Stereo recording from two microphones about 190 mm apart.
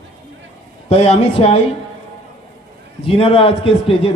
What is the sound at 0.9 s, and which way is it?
Speech, 35° left (ahead or behind).